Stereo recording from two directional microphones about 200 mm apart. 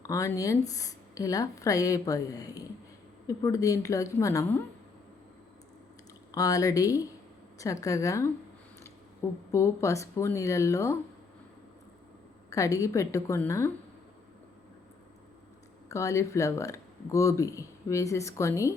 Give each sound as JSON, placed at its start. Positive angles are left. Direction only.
{"t": 0.1, "sound": "speech", "side_deg": 15}
{"t": 6.3, "sound": "speech", "side_deg": 15}
{"t": 12.5, "sound": "speech", "side_deg": 15}
{"t": 15.9, "sound": "speech", "side_deg": 15}